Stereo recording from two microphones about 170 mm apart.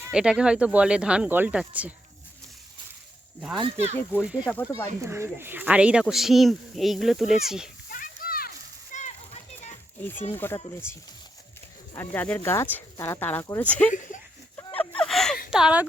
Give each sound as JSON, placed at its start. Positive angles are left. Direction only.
{"t": 0.0, "sound": "speech", "side_deg": -5}
{"t": 3.6, "sound": "speech", "side_deg": -40}
{"t": 4.2, "sound": "speech", "side_deg": -5}
{"t": 7.9, "sound": "a sound", "side_deg": 55}
{"t": 10.0, "sound": "speech", "side_deg": 10}
{"t": 13.9, "sound": "speech", "side_deg": 50}
{"t": 14.5, "sound": "a sound", "side_deg": 10}
{"t": 15.4, "sound": "speech", "side_deg": -5}